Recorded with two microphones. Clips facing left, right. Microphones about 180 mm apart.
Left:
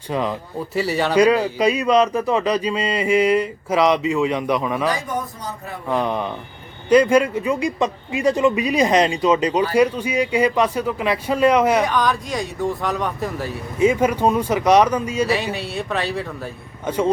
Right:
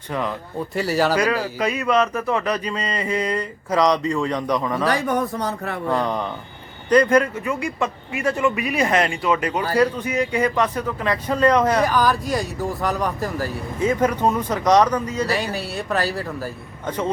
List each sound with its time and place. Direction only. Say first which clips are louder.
0.1 s a man's voice: left 3 dB; 15° left (ahead or behind)
0.7 s speech: right 1 dB; centre (ahead or behind)
1.1 s a man's voice: left 5 dB; 20° left (ahead or behind)
4.9 s speech: right 3 dB; 65° right (ahead or behind)
5.9 s a man's voice: left 2 dB; 10° left (ahead or behind)
11.8 s speech: right 1 dB; 5° right (ahead or behind)
13.7 s a man's voice: left 3 dB; 10° left (ahead or behind)
16.8 s a man's voice: left 4 dB; 10° left (ahead or behind)